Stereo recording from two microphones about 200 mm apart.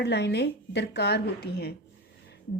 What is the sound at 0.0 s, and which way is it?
A woman's voice, 55° left (ahead or behind).